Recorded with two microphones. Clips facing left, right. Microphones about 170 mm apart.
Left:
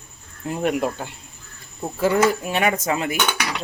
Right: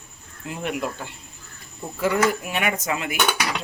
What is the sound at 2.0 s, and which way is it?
Speech, 30° left (ahead or behind).